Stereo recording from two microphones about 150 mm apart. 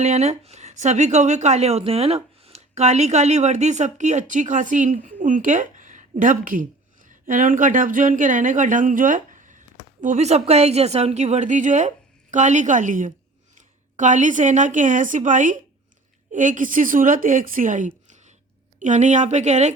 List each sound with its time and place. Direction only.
0.0 s a woman's voice: 45° right (ahead or behind)